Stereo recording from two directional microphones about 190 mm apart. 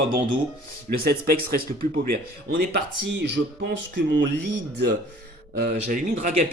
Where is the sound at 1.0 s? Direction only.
50° right (ahead or behind).